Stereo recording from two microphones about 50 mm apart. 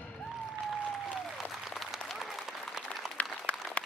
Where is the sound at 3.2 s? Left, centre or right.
Left.